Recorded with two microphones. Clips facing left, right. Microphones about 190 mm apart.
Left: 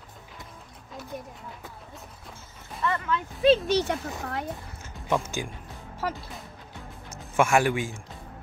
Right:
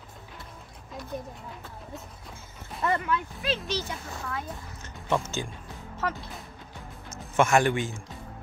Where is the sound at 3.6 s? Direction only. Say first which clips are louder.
Left 8 dB; 65° left (ahead or behind).